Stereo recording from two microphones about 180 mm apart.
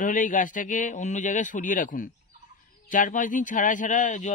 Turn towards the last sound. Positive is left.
turn(degrees=45)  # may be behind; listen again after turning